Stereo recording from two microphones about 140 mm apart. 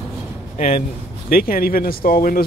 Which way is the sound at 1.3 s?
90° left.